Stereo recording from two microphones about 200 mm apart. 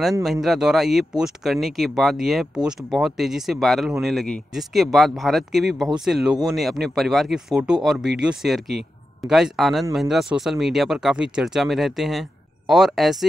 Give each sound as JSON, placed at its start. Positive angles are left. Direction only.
{"t": 0.2, "sound": "speech", "side_deg": 0}